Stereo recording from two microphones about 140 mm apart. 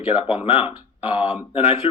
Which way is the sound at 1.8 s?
40° left (ahead or behind).